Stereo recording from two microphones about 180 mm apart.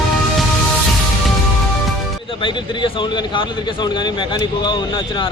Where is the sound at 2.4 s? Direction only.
25° left (ahead or behind).